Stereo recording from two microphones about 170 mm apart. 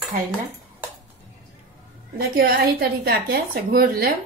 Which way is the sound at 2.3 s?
60° right (ahead or behind).